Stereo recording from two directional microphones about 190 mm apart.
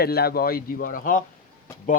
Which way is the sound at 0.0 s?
55° left (ahead or behind).